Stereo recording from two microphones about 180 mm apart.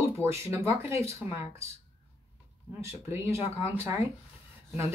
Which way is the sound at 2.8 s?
15° right (ahead or behind).